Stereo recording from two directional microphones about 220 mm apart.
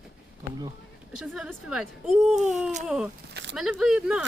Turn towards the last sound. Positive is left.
turn(degrees=-5)  # may be behind; listen again after turning